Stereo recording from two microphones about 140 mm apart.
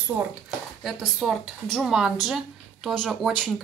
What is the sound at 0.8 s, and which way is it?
A woman's voice, centre (ahead or behind).